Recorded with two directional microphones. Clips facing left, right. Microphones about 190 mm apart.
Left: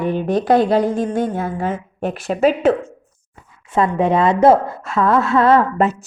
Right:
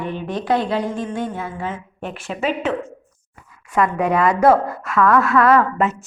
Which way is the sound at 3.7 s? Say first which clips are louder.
Left 2 dB; 25° left (ahead or behind).